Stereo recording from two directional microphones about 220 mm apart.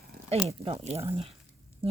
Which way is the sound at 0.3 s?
25° right (ahead or behind).